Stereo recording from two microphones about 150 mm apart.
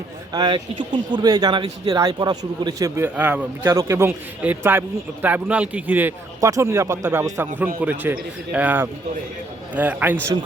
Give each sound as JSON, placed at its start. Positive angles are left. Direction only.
{"t": 0.3, "sound": "speech", "side_deg": -35}